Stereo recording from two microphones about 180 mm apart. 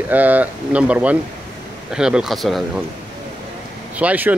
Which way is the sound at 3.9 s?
10° right (ahead or behind).